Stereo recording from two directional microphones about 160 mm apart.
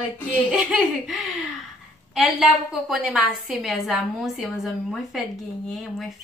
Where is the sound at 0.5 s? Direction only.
5° right (ahead or behind).